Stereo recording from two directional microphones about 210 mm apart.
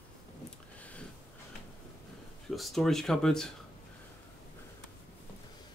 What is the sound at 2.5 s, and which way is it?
Speech, centre (ahead or behind).